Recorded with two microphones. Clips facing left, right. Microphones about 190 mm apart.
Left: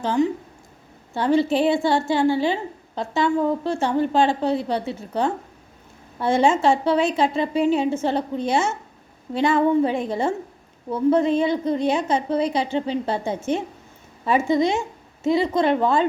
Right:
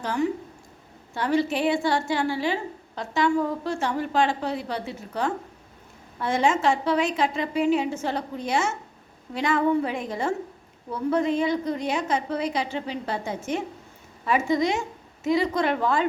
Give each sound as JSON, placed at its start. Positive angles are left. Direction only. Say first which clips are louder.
{"t": 0.0, "sound": "a woman's voice", "louder": "left 5 dB", "side_deg": 25}